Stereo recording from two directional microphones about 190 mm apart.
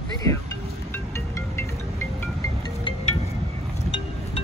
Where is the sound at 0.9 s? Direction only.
15° left (ahead or behind).